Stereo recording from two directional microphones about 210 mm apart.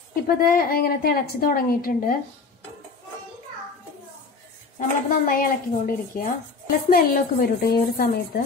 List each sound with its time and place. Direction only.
0.1 s a woman's voice: 45° left (ahead or behind)
4.7 s a woman's voice: 40° left (ahead or behind)